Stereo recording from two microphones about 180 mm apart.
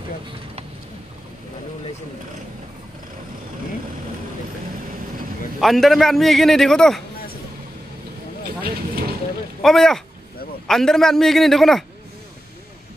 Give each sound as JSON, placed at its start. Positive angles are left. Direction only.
{"t": 5.6, "sound": "a man's voice", "side_deg": 0}
{"t": 8.6, "sound": "vehicle", "side_deg": -60}
{"t": 9.6, "sound": "a man's voice", "side_deg": 0}